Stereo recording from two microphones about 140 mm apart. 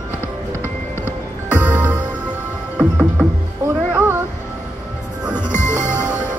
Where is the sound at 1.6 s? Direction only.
10° right (ahead or behind).